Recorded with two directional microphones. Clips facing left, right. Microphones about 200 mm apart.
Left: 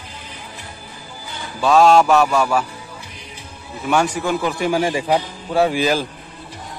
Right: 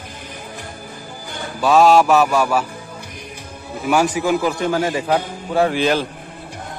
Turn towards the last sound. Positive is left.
turn(degrees=5)  # may be behind; listen again after turning